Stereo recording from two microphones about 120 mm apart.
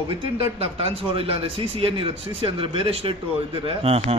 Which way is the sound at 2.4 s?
50° right (ahead or behind).